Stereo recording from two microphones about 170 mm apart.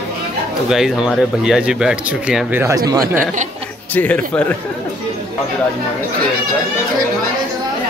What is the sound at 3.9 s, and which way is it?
Speech, 10° left (ahead or behind).